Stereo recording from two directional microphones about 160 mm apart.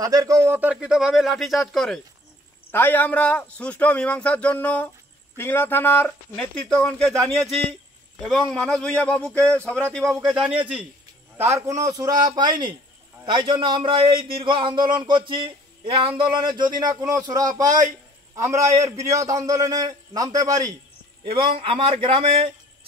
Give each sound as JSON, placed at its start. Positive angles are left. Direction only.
{"t": 0.0, "sound": "speech", "side_deg": -20}
{"t": 2.7, "sound": "speech", "side_deg": 10}
{"t": 10.4, "sound": "a man's voice", "side_deg": -10}
{"t": 11.5, "sound": "a man's voice", "side_deg": -20}
{"t": 21.3, "sound": "a man's voice", "side_deg": -35}